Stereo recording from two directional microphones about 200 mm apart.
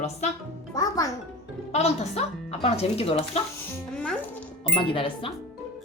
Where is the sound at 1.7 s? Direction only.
35° left (ahead or behind).